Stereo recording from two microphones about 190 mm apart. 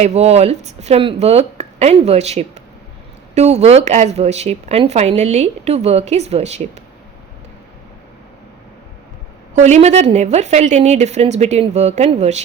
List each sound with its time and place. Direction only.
0.0 s speech: 35° right (ahead or behind)
9.6 s speech: 35° right (ahead or behind)